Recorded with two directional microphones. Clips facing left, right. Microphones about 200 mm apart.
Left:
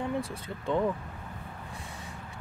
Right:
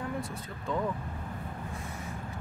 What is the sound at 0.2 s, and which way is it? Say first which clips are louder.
Speech: left 2 dB; 30° left (ahead or behind).